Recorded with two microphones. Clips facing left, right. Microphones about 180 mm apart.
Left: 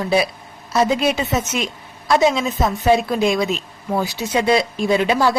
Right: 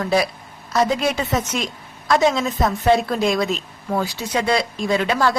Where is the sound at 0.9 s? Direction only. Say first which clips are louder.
Left 2 dB; 20° left (ahead or behind).